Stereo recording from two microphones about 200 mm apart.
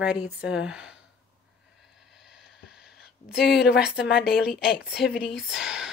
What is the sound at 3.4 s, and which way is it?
Speech, 55° left (ahead or behind).